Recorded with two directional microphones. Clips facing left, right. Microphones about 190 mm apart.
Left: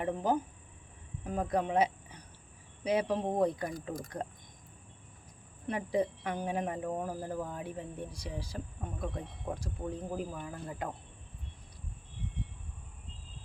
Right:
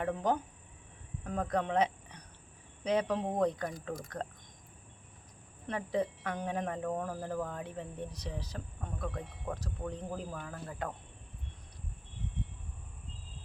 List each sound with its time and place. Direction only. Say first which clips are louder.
0.2 s speech: left 1 dB; 5° left (ahead or behind)
5.6 s speech: left 2 dB; 10° left (ahead or behind)